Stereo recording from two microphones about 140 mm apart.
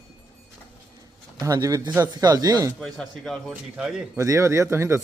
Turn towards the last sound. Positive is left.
turn(degrees=-20)  # may be behind; listen again after turning